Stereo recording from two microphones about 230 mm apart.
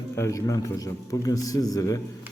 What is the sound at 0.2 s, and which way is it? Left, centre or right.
A man's voice, centre.